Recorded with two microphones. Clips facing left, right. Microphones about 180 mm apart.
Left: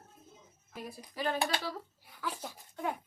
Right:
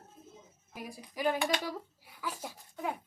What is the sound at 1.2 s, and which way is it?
Speech, 10° right (ahead or behind).